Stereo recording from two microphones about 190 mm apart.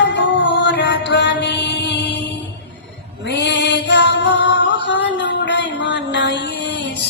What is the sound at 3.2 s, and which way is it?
Female singing, 65° left (ahead or behind).